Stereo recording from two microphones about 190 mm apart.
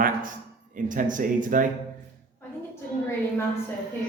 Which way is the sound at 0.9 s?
45° right (ahead or behind).